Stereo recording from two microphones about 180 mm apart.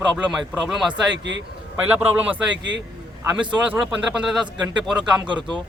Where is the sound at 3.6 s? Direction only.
5° right (ahead or behind).